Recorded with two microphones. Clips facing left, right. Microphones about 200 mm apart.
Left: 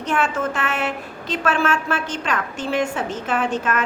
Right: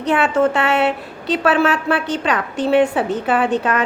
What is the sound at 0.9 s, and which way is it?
A woman's voice, 35° right (ahead or behind).